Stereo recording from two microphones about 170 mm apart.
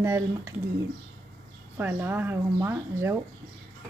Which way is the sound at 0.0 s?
15° right (ahead or behind).